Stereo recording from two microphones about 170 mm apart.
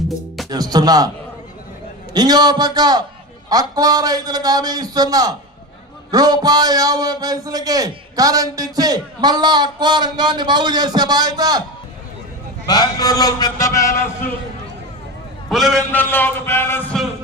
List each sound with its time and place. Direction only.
0.5 s a man's voice: 20° right (ahead or behind)
2.1 s a man's voice: 25° right (ahead or behind)
12.6 s a man's voice: 25° left (ahead or behind)
15.4 s a man's voice: centre (ahead or behind)
15.9 s speech: 10° left (ahead or behind)